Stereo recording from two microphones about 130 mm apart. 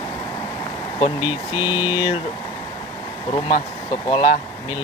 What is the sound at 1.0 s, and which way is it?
Speech, 40° left (ahead or behind).